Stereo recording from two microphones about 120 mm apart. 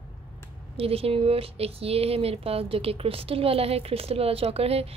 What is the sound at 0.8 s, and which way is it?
A woman's voice, 50° right (ahead or behind).